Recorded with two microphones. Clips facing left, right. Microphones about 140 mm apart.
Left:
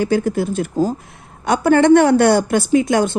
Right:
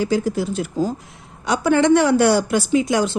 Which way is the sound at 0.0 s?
55° left (ahead or behind).